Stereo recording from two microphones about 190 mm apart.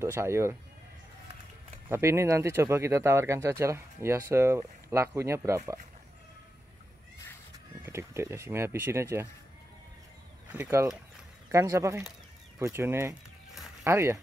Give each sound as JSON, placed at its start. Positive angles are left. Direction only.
{"t": 0.0, "sound": "speech", "side_deg": -15}
{"t": 1.9, "sound": "speech", "side_deg": -15}
{"t": 7.5, "sound": "speech", "side_deg": -15}
{"t": 10.5, "sound": "speech", "side_deg": -10}